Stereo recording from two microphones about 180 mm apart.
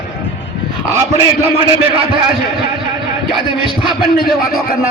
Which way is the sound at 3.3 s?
25° right (ahead or behind).